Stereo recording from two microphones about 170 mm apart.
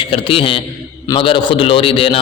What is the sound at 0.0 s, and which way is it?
A man's voice, 30° left (ahead or behind).